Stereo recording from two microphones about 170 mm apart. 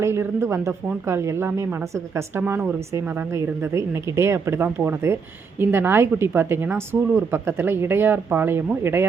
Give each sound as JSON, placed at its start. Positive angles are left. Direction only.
{"t": 0.0, "sound": "a woman's voice", "side_deg": -15}